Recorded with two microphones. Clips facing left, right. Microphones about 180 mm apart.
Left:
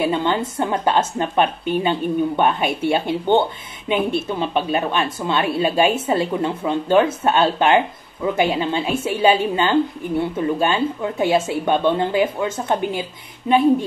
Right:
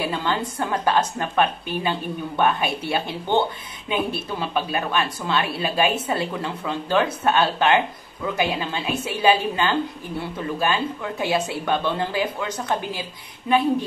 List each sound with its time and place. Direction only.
0.0 s speech: 20° left (ahead or behind)